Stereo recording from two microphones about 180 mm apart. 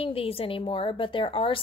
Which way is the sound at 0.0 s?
30° left (ahead or behind).